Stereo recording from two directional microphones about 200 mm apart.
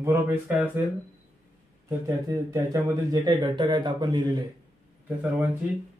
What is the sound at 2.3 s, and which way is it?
Speech, 20° right (ahead or behind).